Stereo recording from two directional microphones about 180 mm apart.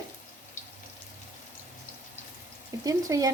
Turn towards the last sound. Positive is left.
turn(degrees=-20)  # may be behind; listen again after turning